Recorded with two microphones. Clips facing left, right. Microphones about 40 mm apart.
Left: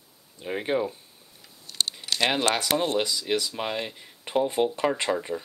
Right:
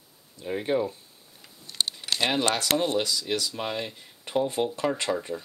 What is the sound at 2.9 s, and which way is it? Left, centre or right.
Speech, centre.